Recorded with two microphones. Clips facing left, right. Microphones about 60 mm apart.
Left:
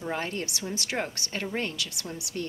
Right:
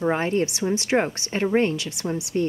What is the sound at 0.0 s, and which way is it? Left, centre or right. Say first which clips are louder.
Speech: right 10 dB; right.